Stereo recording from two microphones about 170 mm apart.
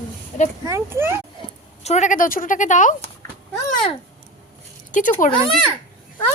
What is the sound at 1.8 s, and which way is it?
Speech, 45° left (ahead or behind).